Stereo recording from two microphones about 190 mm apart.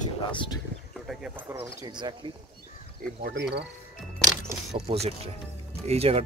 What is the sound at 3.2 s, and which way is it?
Speech, 60° right (ahead or behind).